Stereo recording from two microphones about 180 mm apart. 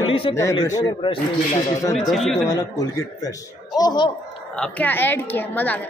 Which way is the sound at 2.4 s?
20° left (ahead or behind).